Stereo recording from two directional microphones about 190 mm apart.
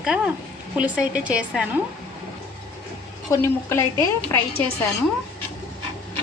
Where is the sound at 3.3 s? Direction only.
15° left (ahead or behind).